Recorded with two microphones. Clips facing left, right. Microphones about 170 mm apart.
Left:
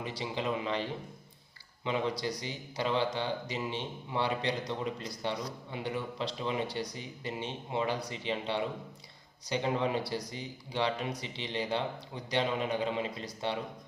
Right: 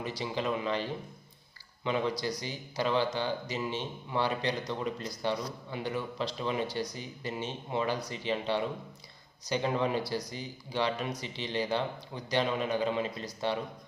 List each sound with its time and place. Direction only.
0.0 s speech: 25° left (ahead or behind)